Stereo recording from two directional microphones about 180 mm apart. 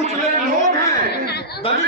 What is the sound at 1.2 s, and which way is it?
Chatter, 65° left (ahead or behind).